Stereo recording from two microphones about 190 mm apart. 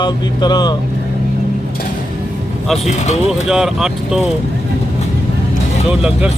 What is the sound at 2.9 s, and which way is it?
Speech, 35° left (ahead or behind).